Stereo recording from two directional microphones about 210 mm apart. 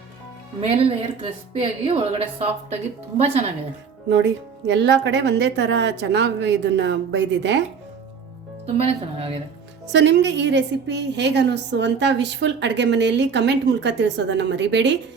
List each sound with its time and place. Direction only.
0.6 s a woman's voice: 25° right (ahead or behind)
4.1 s a woman's voice: 55° right (ahead or behind)
8.6 s a woman's voice: 30° right (ahead or behind)
9.9 s a woman's voice: 55° right (ahead or behind)